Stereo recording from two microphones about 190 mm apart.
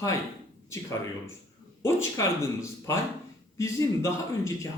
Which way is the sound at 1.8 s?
15° left (ahead or behind).